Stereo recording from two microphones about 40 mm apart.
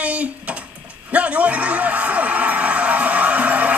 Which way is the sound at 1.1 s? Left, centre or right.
Right.